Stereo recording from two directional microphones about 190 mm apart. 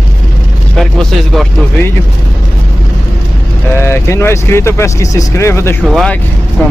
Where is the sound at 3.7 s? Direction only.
15° left (ahead or behind).